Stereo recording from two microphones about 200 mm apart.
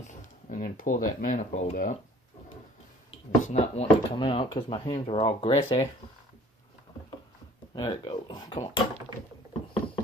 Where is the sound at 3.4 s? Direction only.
35° left (ahead or behind).